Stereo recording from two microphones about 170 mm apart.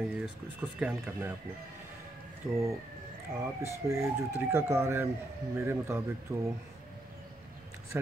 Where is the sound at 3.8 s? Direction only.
15° right (ahead or behind).